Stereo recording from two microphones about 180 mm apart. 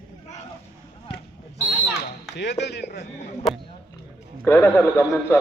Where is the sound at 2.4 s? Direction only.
70° left (ahead or behind).